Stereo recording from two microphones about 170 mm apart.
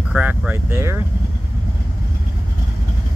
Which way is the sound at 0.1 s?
5° right (ahead or behind).